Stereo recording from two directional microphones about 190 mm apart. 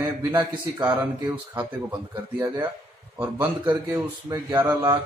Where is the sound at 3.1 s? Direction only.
10° right (ahead or behind).